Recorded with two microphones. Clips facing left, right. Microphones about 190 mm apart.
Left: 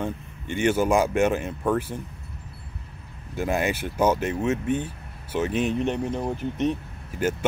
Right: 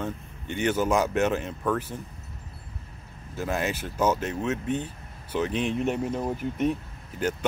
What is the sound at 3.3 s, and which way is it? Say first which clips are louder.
Speech: left 4 dB; 15° left (ahead or behind).